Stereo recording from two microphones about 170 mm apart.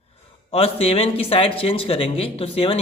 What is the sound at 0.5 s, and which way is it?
A man's voice, 35° left (ahead or behind).